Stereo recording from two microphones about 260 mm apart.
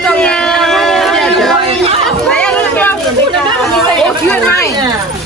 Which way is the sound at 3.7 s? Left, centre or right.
Centre.